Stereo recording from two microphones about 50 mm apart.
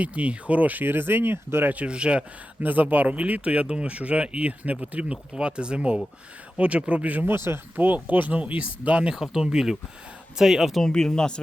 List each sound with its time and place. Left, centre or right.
0.0 s speech: right
1.6 s speech: right
2.6 s speech: right
7.3 s speech: right
7.9 s speech: right
9.1 s speech: centre
10.8 s speech: centre